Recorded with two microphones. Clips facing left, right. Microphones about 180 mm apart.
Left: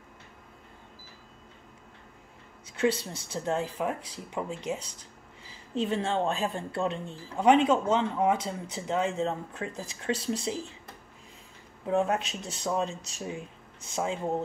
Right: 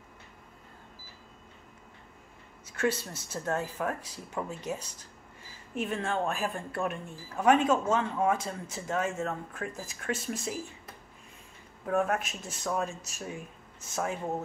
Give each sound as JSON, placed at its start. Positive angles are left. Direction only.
{"t": 2.8, "sound": "speech", "side_deg": 25}
{"t": 5.8, "sound": "speech", "side_deg": 25}
{"t": 11.8, "sound": "speech", "side_deg": 20}